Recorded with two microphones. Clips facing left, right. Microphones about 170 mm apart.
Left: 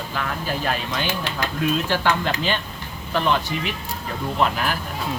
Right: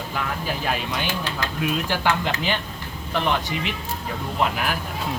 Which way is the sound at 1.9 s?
15° right (ahead or behind).